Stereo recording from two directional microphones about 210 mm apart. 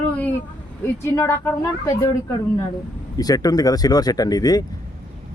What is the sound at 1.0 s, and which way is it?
Speech, 15° left (ahead or behind).